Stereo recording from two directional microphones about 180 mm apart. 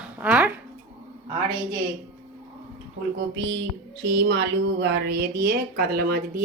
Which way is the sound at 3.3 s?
80° right.